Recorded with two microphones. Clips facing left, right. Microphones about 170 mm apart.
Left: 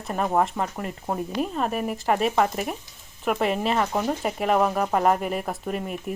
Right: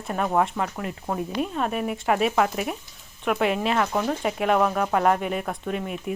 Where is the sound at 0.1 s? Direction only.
Centre (ahead or behind).